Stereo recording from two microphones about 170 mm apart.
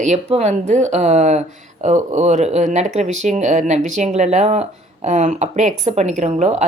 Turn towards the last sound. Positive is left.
turn(degrees=-40)  # may be behind; listen again after turning